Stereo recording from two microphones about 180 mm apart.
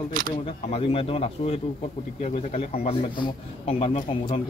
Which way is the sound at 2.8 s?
30° left (ahead or behind).